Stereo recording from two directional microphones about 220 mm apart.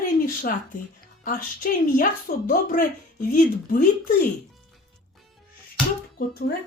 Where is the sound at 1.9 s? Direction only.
35° left (ahead or behind).